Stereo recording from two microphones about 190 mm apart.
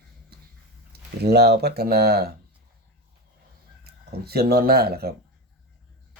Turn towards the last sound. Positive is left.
turn(degrees=-55)  # may be behind; listen again after turning